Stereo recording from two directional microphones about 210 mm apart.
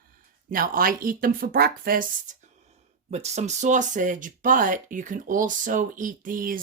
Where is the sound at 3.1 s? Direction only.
30° right (ahead or behind).